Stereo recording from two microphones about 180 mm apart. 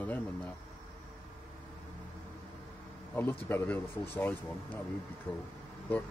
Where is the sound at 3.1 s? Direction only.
10° left (ahead or behind).